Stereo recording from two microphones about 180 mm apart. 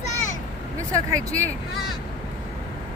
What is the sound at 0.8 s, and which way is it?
Speech, 20° right (ahead or behind).